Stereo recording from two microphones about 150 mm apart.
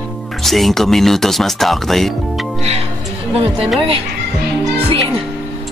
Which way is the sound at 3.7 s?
35° right (ahead or behind).